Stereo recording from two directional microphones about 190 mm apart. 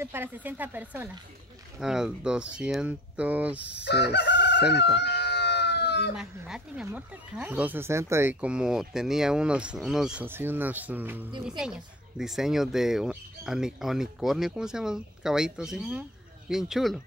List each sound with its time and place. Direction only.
0.0 s speech: 10° right (ahead or behind)
3.8 s chicken: 60° left (ahead or behind)
4.9 s cat: 60° left (ahead or behind)
6.1 s speech: 5° right (ahead or behind)